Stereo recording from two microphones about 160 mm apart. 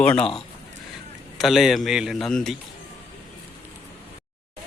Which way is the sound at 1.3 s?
Centre (ahead or behind).